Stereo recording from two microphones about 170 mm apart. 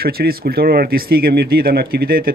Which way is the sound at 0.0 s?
65° right (ahead or behind).